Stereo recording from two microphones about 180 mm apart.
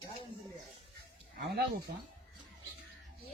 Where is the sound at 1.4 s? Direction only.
60° right (ahead or behind).